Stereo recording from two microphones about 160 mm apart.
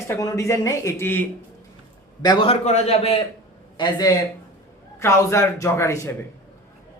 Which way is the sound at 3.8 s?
25° left (ahead or behind).